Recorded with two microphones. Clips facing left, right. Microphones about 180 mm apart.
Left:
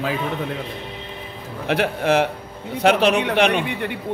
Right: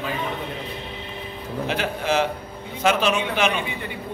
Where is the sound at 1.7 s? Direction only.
65° left (ahead or behind).